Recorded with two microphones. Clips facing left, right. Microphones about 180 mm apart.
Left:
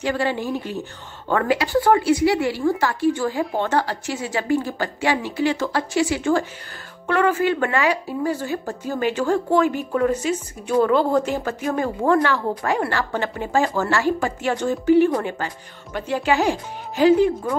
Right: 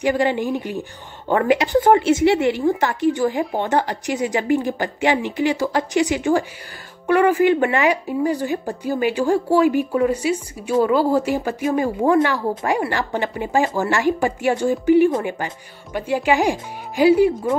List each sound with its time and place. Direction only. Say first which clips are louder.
0.0 s speech: right 4 dB; 15° right (ahead or behind)